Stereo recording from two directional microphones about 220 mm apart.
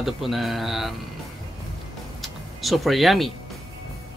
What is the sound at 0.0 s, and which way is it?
Speech, centre (ahead or behind).